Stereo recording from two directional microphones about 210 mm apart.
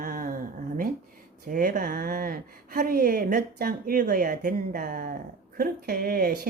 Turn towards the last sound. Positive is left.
turn(degrees=-45)  # may be behind; listen again after turning